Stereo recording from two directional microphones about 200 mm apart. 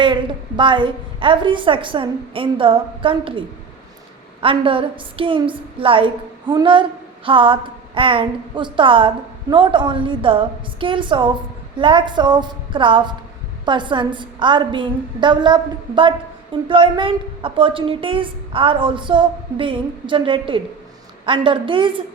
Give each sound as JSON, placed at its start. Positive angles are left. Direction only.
{"t": 0.0, "sound": "a woman's voice", "side_deg": -25}
{"t": 4.4, "sound": "a woman's voice", "side_deg": -25}